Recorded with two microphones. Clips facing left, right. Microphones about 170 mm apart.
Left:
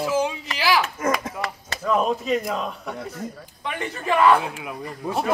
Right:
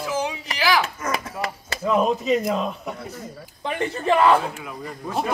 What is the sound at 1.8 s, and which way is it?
Speech, 5° right (ahead or behind).